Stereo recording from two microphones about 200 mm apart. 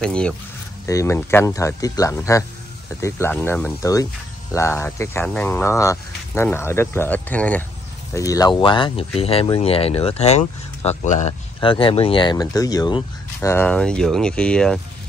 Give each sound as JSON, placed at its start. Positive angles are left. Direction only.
{"t": 0.0, "sound": "speech", "side_deg": 5}